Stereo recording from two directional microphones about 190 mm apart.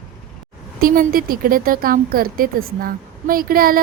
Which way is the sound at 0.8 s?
50° right (ahead or behind).